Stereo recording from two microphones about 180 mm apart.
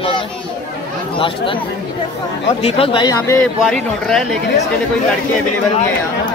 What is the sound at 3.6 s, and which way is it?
Speech, centre (ahead or behind).